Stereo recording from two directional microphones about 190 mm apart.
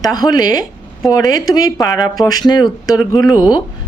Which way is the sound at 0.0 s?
20° left (ahead or behind).